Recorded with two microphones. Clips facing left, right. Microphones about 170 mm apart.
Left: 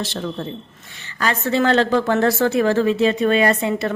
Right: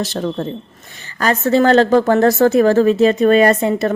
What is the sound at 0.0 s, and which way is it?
A woman's voice, 45° right (ahead or behind).